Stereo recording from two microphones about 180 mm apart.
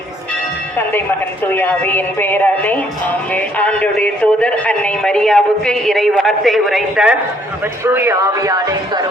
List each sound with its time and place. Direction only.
1.5 s a woman's voice: 10° left (ahead or behind); by 9.0 s 20° right (ahead or behind)